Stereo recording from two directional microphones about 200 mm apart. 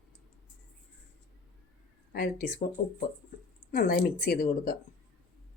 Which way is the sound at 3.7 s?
45° left (ahead or behind).